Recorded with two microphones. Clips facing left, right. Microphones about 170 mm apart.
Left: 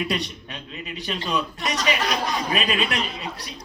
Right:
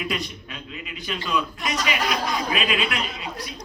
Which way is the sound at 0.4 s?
35° left (ahead or behind).